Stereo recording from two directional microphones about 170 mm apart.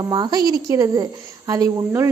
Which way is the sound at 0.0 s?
25° right (ahead or behind).